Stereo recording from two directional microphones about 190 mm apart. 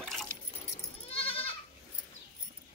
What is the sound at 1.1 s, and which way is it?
Goat, 30° left (ahead or behind).